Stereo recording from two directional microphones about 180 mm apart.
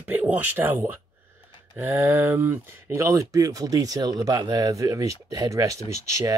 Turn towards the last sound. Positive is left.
turn(degrees=-15)  # may be behind; listen again after turning